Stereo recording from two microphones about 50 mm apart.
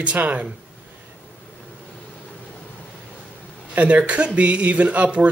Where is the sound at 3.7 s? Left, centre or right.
Right.